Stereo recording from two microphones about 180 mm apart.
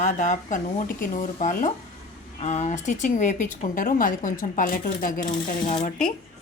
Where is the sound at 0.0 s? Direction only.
45° left (ahead or behind).